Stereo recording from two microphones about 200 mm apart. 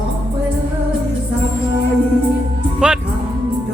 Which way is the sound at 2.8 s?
5° right (ahead or behind).